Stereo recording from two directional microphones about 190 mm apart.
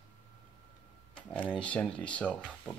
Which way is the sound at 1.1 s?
5° left (ahead or behind).